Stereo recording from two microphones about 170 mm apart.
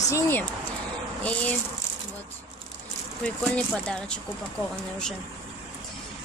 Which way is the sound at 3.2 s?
5° left (ahead or behind).